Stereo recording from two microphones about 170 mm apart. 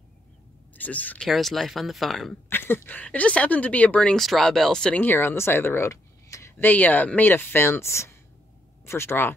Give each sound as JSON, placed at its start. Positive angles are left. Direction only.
{"t": 0.7, "sound": "speech", "side_deg": 10}
{"t": 2.5, "sound": "speech", "side_deg": 15}